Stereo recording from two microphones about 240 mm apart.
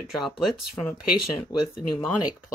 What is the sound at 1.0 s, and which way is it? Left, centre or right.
Speech, left.